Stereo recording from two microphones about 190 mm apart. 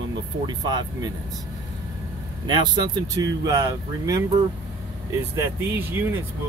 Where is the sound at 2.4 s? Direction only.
25° right (ahead or behind).